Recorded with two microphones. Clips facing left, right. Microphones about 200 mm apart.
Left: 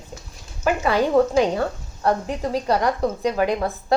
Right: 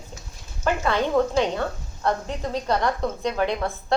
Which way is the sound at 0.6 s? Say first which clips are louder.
Left 3 dB; 10° left (ahead or behind).